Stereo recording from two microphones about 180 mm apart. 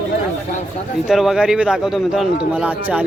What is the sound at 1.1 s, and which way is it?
A man's voice, centre (ahead or behind).